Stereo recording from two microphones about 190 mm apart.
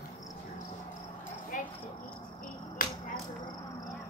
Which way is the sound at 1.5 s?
45° left (ahead or behind).